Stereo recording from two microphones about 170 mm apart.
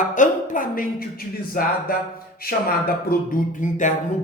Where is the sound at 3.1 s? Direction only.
50° left (ahead or behind).